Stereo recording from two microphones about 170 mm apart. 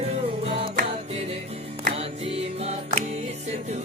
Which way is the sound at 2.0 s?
35° right (ahead or behind).